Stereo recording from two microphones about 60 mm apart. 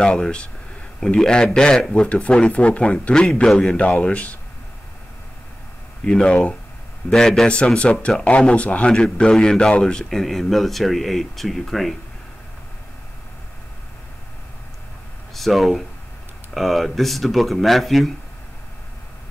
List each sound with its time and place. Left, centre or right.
0.0 s speech: centre
6.0 s speech: centre
10.0 s speech: centre
15.3 s speech: centre